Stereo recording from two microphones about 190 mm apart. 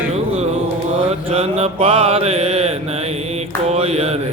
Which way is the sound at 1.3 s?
35° right (ahead or behind).